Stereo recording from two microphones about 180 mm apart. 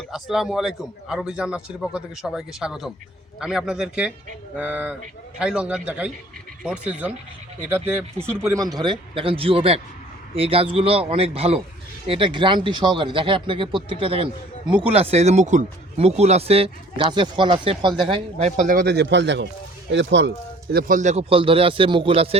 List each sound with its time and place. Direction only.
0.1 s a man's voice: centre (ahead or behind); by 20.3 s 80° right
20.7 s speech: 50° right (ahead or behind); by 22.4 s 30° right (ahead or behind)